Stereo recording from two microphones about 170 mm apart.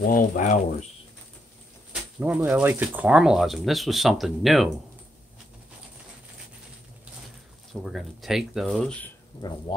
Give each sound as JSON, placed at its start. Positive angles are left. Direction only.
{"t": 0.0, "sound": "speech", "side_deg": 55}
{"t": 1.9, "sound": "a sound", "side_deg": -5}
{"t": 2.4, "sound": "speech", "side_deg": -10}
{"t": 7.8, "sound": "speech", "side_deg": 0}
{"t": 9.3, "sound": "speech", "side_deg": 30}